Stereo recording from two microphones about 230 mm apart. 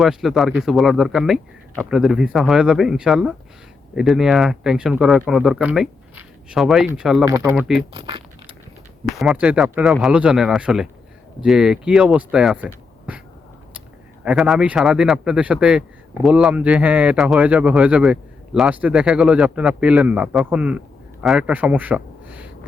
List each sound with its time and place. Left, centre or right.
0.0 s a man's voice: centre
7.3 s speech: centre
7.5 s a man's voice: centre
7.9 s speech: right
9.1 s a man's voice: centre
14.3 s a man's voice: centre